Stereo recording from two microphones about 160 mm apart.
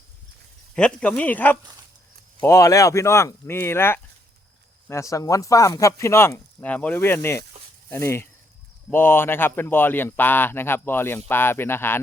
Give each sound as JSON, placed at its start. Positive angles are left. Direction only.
{"t": 0.7, "sound": "speech", "side_deg": 5}